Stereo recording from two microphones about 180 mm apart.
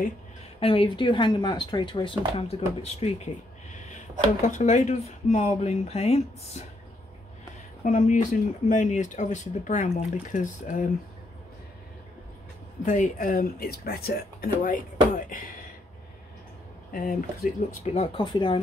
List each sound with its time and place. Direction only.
0.6 s speech: 30° left (ahead or behind)
4.5 s speech: 40° left (ahead or behind)
7.8 s speech: 45° left (ahead or behind)
13.2 s speech: 50° left (ahead or behind)
16.9 s speech: 50° left (ahead or behind)
17.8 s speech: 35° left (ahead or behind)